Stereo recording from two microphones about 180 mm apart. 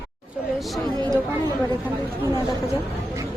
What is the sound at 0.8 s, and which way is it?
Speech, 25° right (ahead or behind).